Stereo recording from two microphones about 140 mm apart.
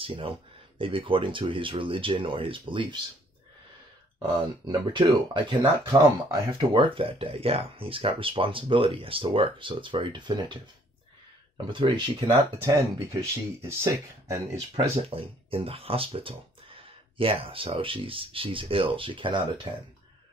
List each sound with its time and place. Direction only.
0.0 s speech: 40° right (ahead or behind)
4.3 s speech: 30° right (ahead or behind)
11.6 s speech: 35° right (ahead or behind)
12.7 s speech: 20° right (ahead or behind)
15.0 s speech: 40° right (ahead or behind)